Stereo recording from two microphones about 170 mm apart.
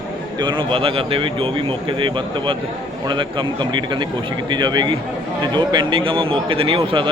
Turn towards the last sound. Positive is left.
turn(degrees=-30)  # may be behind; listen again after turning